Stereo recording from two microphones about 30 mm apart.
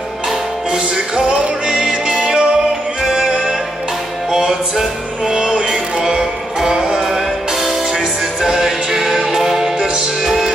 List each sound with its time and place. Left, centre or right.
0.7 s music: right
4.7 s music: centre